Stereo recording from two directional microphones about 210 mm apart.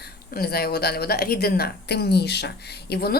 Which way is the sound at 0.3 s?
50° left (ahead or behind).